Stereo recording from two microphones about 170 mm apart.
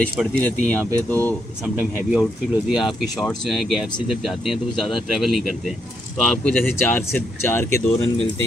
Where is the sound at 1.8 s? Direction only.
5° right (ahead or behind).